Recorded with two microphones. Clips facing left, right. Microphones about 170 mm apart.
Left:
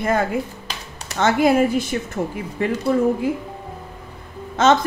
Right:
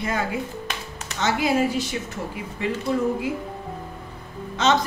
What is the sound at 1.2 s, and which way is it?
Speech, 55° left (ahead or behind).